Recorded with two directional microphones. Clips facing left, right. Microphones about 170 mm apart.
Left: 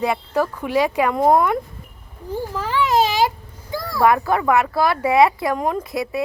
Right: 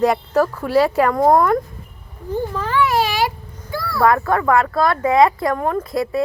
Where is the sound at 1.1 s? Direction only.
20° left (ahead or behind).